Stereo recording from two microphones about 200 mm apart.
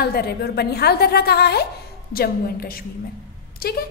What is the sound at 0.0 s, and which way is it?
A woman's voice, 50° left (ahead or behind).